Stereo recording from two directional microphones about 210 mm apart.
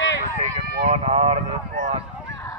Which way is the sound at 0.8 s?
30° right (ahead or behind).